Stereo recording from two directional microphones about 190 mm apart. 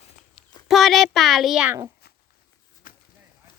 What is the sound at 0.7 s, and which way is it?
A child's voice, centre (ahead or behind).